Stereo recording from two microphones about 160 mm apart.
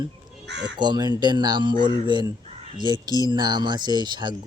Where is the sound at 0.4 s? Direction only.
90° right.